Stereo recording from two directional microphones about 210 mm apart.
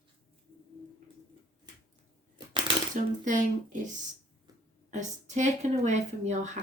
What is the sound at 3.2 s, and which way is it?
A woman's voice, 35° right (ahead or behind).